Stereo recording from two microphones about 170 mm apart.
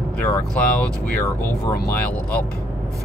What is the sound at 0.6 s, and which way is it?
Speech, 10° left (ahead or behind).